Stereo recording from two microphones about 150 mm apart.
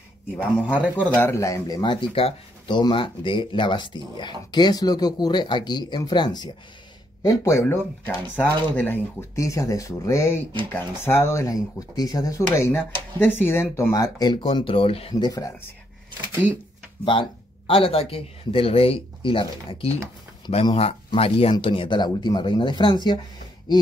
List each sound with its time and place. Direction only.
0.4 s speech: 10° left (ahead or behind); by 15.2 s 40° left (ahead or behind)
15.2 s speech: 25° left (ahead or behind)
17.0 s speech: 35° left (ahead or behind)